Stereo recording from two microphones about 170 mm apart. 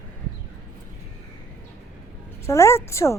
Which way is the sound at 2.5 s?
15° left (ahead or behind).